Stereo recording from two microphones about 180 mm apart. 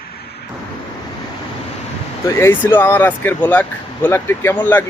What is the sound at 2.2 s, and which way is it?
Speech, 15° left (ahead or behind).